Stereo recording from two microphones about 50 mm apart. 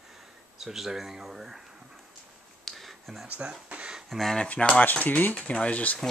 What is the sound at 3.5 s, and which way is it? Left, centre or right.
Speech, right.